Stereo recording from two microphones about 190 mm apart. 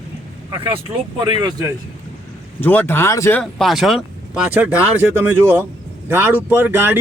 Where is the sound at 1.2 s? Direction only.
25° right (ahead or behind).